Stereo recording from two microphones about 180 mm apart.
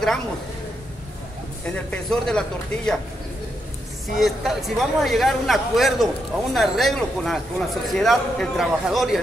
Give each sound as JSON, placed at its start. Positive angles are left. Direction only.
{"t": 1.6, "sound": "a man's voice", "side_deg": 5}
{"t": 4.2, "sound": "a man's voice", "side_deg": 0}